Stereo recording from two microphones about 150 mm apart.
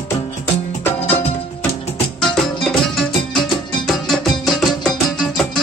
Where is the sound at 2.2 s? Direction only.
Centre (ahead or behind).